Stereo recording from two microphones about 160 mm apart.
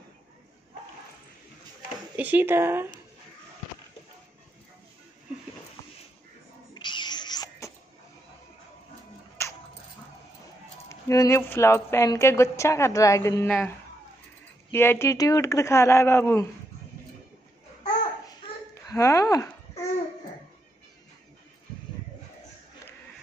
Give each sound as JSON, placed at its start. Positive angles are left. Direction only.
{"t": 2.1, "sound": "speech", "side_deg": -10}
{"t": 6.7, "sound": "babbling", "side_deg": 30}
{"t": 9.4, "sound": "a sound", "side_deg": 15}
{"t": 10.9, "sound": "speech", "side_deg": 20}
{"t": 14.7, "sound": "speech", "side_deg": 15}
{"t": 18.9, "sound": "speech", "side_deg": 20}